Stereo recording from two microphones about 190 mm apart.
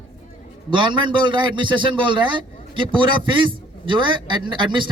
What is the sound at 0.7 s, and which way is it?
A man's voice, 25° right (ahead or behind).